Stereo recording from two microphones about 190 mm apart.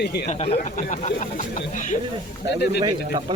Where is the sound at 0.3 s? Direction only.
35° left (ahead or behind).